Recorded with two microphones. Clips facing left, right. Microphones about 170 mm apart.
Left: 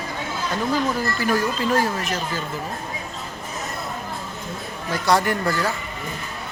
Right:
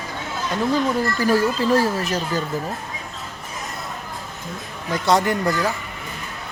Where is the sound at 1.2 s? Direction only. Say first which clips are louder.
Right 4 dB; 35° right (ahead or behind).